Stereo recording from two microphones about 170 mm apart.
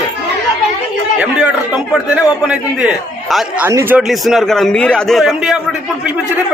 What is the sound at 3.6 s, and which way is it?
Speech, 15° right (ahead or behind).